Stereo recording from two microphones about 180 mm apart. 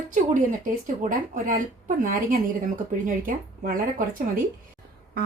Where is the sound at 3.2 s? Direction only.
50° right (ahead or behind).